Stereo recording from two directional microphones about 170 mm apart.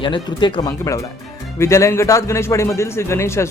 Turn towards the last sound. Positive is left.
turn(degrees=15)  # may be behind; listen again after turning